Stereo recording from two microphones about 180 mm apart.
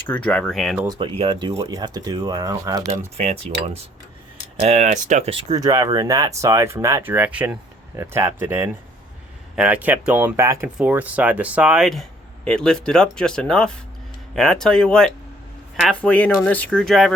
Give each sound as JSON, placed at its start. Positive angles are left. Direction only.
{"t": 0.1, "sound": "speech", "side_deg": 5}
{"t": 0.9, "sound": "speech", "side_deg": -30}
{"t": 3.2, "sound": "mechanisms", "side_deg": -35}
{"t": 4.6, "sound": "speech", "side_deg": -40}